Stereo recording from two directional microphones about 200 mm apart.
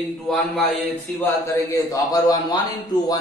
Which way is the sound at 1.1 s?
10° left (ahead or behind).